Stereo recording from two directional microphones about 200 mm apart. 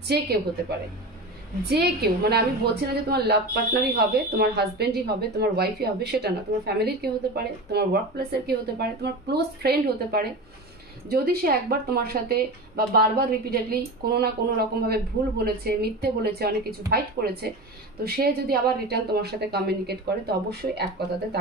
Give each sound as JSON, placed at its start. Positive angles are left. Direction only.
{"t": 0.1, "sound": "a woman's voice", "side_deg": -55}